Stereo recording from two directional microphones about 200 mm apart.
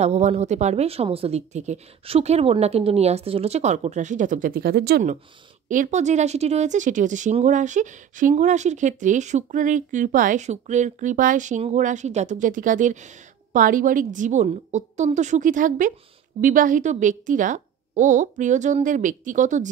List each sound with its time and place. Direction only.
0.0 s speech: 35° right (ahead or behind); by 5.0 s 55° right (ahead or behind)
5.7 s speech: 35° right (ahead or behind)